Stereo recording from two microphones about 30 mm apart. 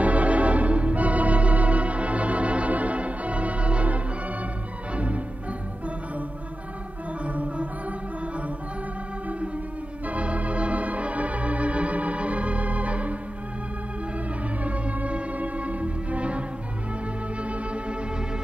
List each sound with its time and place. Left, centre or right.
0.0 s organ: right
4.9 s music: right
7.2 s music: right
10.0 s organ: right
14.6 s music: right